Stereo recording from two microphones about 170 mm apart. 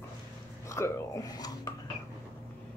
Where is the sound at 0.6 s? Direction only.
15° left (ahead or behind).